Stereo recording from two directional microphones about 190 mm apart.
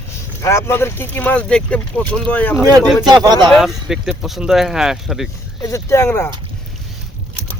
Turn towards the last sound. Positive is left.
turn(degrees=10)  # may be behind; listen again after turning